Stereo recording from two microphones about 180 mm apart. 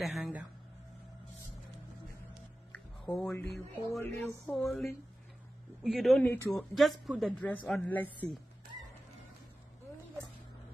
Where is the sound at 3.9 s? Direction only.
15° left (ahead or behind).